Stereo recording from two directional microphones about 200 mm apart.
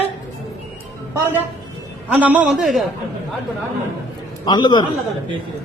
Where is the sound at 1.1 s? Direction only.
10° right (ahead or behind).